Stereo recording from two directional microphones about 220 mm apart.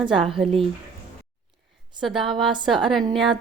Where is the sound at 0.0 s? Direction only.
25° right (ahead or behind).